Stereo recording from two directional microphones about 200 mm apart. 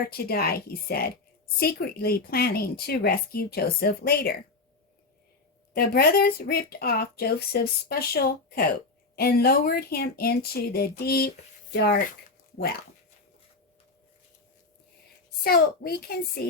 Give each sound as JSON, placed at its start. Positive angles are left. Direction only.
{"t": 0.3, "sound": "speech", "side_deg": 50}
{"t": 5.7, "sound": "speech", "side_deg": 50}
{"t": 15.4, "sound": "speech", "side_deg": 50}